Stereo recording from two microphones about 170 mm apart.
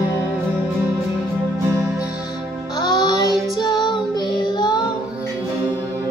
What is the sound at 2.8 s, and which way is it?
Music, 20° left (ahead or behind).